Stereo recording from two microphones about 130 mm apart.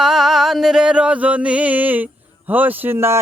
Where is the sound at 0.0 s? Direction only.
Centre (ahead or behind).